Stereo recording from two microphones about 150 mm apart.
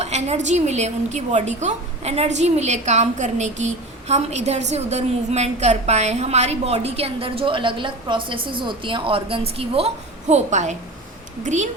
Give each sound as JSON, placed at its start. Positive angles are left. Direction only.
{"t": 0.0, "sound": "a woman's voice", "side_deg": -50}